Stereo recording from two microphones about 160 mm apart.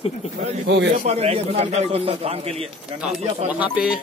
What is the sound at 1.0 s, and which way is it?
A man's voice, 40° right (ahead or behind).